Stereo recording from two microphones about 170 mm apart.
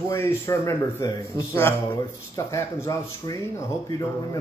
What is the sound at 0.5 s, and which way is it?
Speech, 20° left (ahead or behind).